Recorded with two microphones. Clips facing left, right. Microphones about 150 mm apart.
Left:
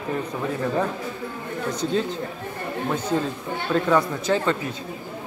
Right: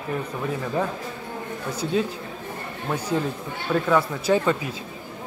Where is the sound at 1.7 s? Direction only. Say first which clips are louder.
Right 1 dB; 10° right (ahead or behind).